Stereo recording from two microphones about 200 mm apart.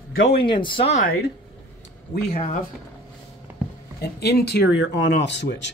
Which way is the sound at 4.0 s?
55° left (ahead or behind).